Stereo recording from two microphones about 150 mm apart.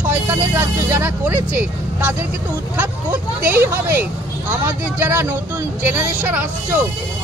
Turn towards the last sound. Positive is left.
turn(degrees=-15)  # may be behind; listen again after turning